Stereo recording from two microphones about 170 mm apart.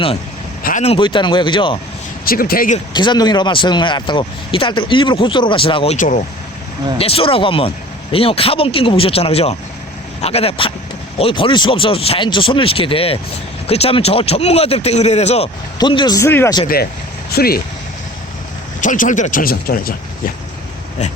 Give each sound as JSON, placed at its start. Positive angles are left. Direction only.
{"t": 0.6, "sound": "vehicle", "side_deg": 45}
{"t": 0.9, "sound": "speech", "side_deg": 25}
{"t": 2.2, "sound": "speech", "side_deg": 60}
{"t": 2.9, "sound": "speech", "side_deg": 25}
{"t": 7.0, "sound": "speech", "side_deg": 35}
{"t": 15.8, "sound": "speech", "side_deg": 25}
{"t": 17.3, "sound": "speech", "side_deg": 60}
{"t": 18.8, "sound": "speech", "side_deg": 50}